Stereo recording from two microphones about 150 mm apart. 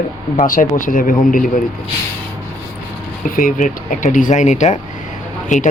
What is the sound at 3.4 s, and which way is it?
Speech, 60° left (ahead or behind).